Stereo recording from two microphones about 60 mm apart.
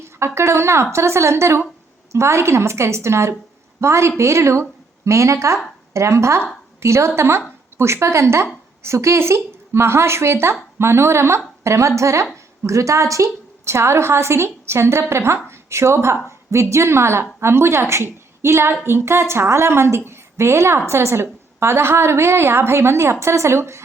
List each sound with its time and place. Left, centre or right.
0.3 s a woman's voice: right